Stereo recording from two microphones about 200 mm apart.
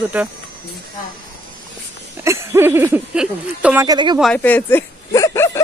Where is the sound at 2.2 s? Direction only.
15° right (ahead or behind).